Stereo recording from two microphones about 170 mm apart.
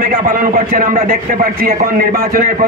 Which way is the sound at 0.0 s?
55° right (ahead or behind).